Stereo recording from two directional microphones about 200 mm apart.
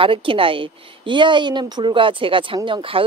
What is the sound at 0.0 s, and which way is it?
A woman's voice, 25° right (ahead or behind).